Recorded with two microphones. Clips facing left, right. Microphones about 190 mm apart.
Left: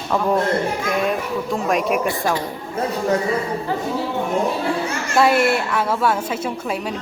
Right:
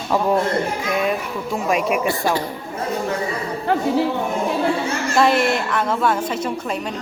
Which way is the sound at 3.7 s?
65° right (ahead or behind).